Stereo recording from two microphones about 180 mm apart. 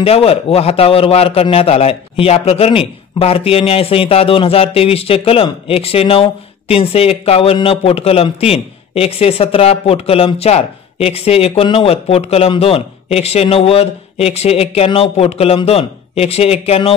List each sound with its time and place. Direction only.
0.0 s a man's voice: 35° left (ahead or behind)